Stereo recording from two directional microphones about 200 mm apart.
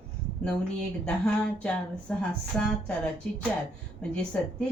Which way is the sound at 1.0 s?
5° left (ahead or behind).